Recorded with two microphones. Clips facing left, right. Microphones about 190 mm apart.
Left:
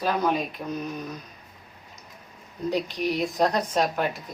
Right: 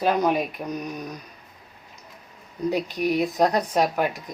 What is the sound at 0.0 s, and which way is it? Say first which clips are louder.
Speech: right 3 dB; 20° right (ahead or behind).